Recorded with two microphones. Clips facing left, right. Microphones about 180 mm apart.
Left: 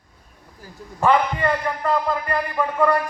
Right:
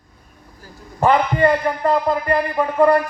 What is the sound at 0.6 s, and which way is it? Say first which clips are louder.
A man's voice: right 4 dB; 40° right (ahead or behind).